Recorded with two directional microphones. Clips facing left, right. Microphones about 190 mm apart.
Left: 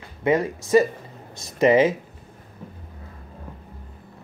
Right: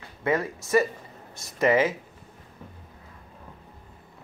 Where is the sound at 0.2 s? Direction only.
15° left (ahead or behind).